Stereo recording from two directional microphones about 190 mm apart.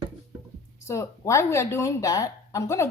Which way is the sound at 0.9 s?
15° left (ahead or behind).